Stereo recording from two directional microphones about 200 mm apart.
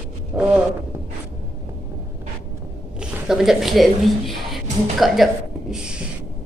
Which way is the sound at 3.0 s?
Centre (ahead or behind).